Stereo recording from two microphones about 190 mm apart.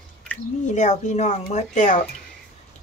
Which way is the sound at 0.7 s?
40° left (ahead or behind).